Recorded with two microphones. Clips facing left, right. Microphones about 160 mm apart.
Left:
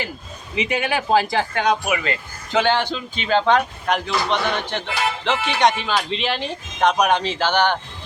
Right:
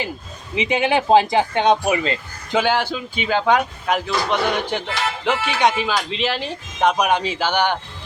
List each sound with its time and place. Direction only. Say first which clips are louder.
0.5 s speech: right 3 dB; 25° right (ahead or behind)
2.5 s speech: even; 10° right (ahead or behind)